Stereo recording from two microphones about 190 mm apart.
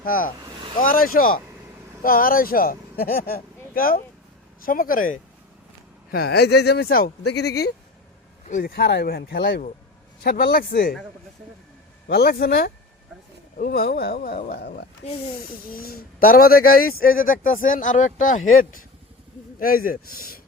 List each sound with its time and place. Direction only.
0.0 s speech: 50° left (ahead or behind)
6.1 s speech: 55° left (ahead or behind)
8.4 s speech: 45° left (ahead or behind)
12.0 s speech: 55° left (ahead or behind)
19.5 s speech: 50° left (ahead or behind)